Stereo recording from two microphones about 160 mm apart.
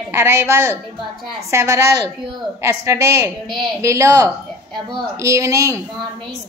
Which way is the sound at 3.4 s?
Centre (ahead or behind).